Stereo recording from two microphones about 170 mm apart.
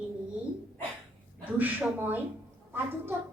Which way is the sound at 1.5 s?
10° right (ahead or behind).